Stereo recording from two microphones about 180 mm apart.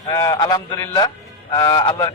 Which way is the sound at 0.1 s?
25° left (ahead or behind).